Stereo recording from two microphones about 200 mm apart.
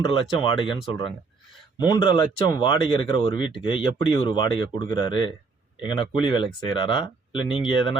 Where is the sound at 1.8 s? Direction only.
20° left (ahead or behind).